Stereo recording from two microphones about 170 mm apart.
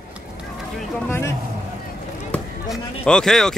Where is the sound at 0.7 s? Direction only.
10° left (ahead or behind).